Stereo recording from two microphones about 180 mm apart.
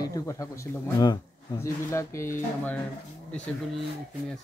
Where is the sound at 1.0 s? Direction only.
25° left (ahead or behind).